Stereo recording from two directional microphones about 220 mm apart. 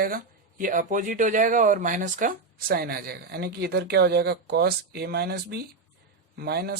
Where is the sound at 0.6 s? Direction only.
40° right (ahead or behind).